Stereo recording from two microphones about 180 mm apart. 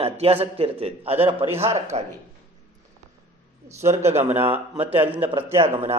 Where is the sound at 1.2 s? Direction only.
15° right (ahead or behind).